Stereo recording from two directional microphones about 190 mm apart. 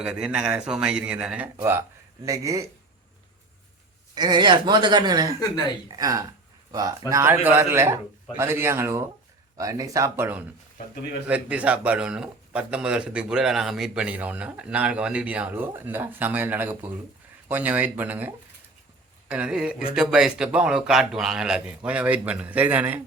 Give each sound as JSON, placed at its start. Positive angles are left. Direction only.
{"t": 0.0, "sound": "speech", "side_deg": -5}
{"t": 4.1, "sound": "a man's voice", "side_deg": -20}
{"t": 5.4, "sound": "speech", "side_deg": 20}
{"t": 6.0, "sound": "a man's voice", "side_deg": -20}